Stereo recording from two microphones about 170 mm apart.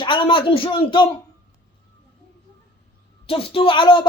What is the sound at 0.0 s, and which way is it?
A man's voice, 30° left (ahead or behind).